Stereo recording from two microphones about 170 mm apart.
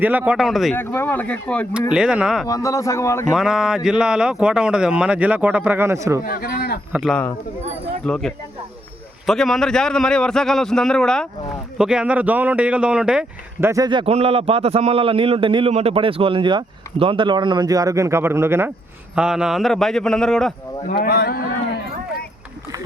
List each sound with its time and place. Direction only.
0.0 s speech: 10° right (ahead or behind)
0.8 s speech: 10° left (ahead or behind)
1.9 s speech: 5° right (ahead or behind)
2.5 s speech: 20° left (ahead or behind)
3.3 s speech: 5° right (ahead or behind)
6.2 s speech: 60° left (ahead or behind)
6.9 s speech: centre (ahead or behind)
13.7 s a man's voice: 20° right (ahead or behind); by 20.5 s 5° left (ahead or behind)
20.9 s speech: 65° left (ahead or behind)